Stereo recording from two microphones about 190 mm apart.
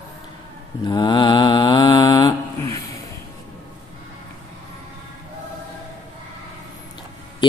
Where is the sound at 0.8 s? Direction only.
25° left (ahead or behind).